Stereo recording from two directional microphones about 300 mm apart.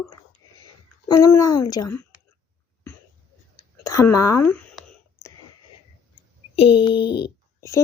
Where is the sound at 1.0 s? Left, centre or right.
Centre.